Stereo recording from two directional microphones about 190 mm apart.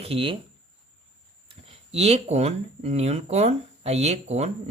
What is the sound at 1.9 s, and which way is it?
Speech, 35° right (ahead or behind).